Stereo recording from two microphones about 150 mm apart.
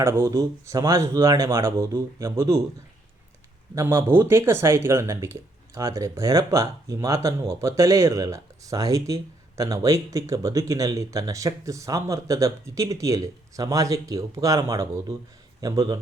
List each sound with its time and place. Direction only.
0.0 s speech: 20° right (ahead or behind)
3.8 s speech: 15° right (ahead or behind)